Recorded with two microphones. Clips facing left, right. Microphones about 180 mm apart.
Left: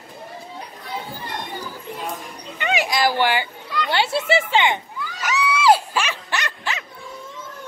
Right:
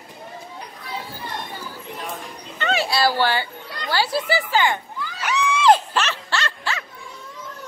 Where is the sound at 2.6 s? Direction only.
15° left (ahead or behind).